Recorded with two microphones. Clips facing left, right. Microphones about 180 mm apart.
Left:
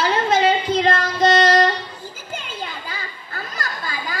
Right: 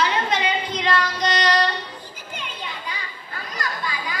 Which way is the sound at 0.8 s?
45° left (ahead or behind).